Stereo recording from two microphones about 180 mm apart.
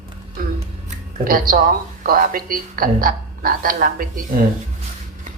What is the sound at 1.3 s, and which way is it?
Speech, 50° right (ahead or behind).